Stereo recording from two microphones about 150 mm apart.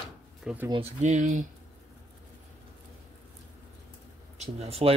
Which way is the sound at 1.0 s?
55° right (ahead or behind).